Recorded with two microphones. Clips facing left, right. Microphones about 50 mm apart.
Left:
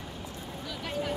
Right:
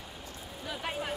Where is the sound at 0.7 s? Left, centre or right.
Right.